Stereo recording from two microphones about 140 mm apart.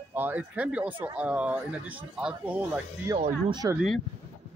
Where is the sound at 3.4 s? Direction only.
30° right (ahead or behind).